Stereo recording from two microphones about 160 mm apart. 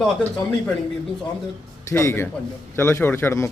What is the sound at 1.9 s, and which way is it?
A man's voice, 15° left (ahead or behind).